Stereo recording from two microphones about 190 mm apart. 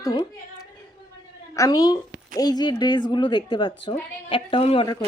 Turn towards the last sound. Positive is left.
turn(degrees=30)  # may be behind; listen again after turning